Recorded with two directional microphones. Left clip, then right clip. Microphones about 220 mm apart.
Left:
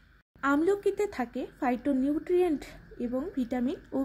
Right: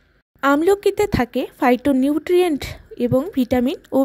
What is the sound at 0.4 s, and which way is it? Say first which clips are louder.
Speech: right 11 dB; 45° right (ahead or behind).